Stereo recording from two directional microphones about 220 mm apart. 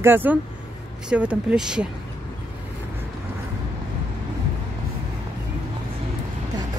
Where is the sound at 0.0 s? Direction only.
10° right (ahead or behind).